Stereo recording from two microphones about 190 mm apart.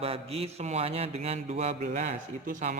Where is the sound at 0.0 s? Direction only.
30° right (ahead or behind).